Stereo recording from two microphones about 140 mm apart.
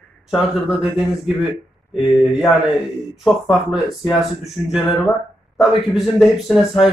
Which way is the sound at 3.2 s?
Centre (ahead or behind).